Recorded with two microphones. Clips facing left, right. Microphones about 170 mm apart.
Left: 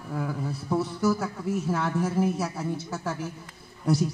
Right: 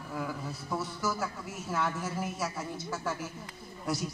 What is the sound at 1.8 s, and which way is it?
Speech, 35° left (ahead or behind).